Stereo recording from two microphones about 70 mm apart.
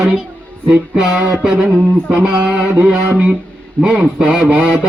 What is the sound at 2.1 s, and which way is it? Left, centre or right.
Music, centre.